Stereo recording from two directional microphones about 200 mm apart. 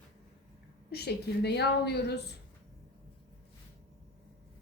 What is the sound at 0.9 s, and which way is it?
A woman's voice, 55° left (ahead or behind).